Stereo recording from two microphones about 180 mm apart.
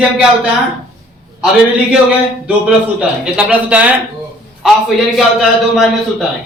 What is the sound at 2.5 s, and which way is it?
A man's voice, 5° right (ahead or behind).